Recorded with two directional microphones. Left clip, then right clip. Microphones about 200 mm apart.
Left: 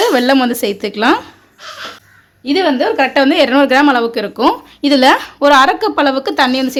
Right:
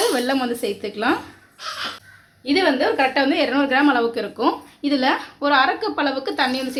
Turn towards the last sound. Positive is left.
turn(degrees=55)  # may be behind; listen again after turning